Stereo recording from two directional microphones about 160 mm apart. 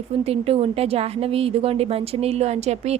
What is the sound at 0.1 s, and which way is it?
A woman's voice, 40° right (ahead or behind).